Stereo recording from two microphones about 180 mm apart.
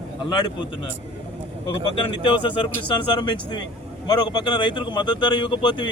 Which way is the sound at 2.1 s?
30° left (ahead or behind).